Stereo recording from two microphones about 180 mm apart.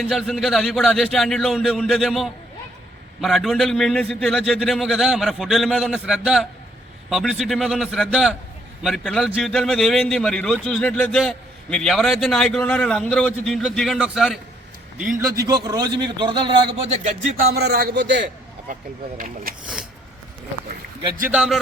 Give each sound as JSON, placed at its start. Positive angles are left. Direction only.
{"t": 0.0, "sound": "a man's voice", "side_deg": 0}
{"t": 15.2, "sound": "speech", "side_deg": -20}
{"t": 17.5, "sound": "a man's voice", "side_deg": -60}
{"t": 18.7, "sound": "speech", "side_deg": -50}
{"t": 21.2, "sound": "a man's voice", "side_deg": -5}